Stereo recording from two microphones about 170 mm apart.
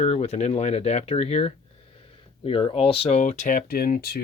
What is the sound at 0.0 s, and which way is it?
Speech, 40° left (ahead or behind).